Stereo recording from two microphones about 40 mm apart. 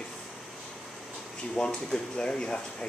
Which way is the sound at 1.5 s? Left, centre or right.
Centre.